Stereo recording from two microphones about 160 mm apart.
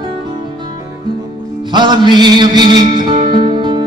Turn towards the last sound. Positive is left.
turn(degrees=-30)  # may be behind; listen again after turning